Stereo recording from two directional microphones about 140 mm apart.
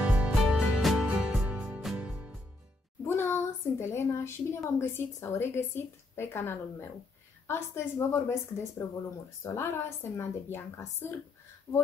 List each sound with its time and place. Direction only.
0.0 s music: 10° right (ahead or behind)
3.0 s a woman's voice: 15° left (ahead or behind)